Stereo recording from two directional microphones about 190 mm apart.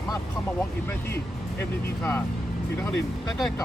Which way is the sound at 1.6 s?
10° left (ahead or behind).